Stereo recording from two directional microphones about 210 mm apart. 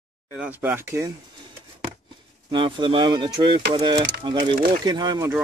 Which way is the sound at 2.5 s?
25° right (ahead or behind).